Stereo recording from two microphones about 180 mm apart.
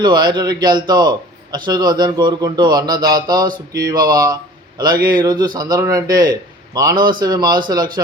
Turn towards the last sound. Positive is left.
turn(degrees=-25)  # may be behind; listen again after turning